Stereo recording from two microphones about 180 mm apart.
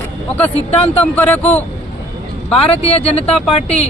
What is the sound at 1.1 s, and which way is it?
Speech, 10° left (ahead or behind).